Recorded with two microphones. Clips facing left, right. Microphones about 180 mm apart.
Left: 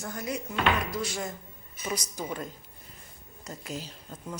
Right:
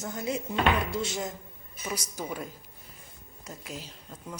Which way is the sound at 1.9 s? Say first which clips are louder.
Left 1 dB; 10° right (ahead or behind).